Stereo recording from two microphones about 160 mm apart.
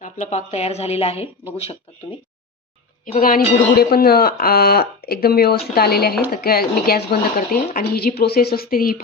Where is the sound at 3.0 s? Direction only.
60° left (ahead or behind).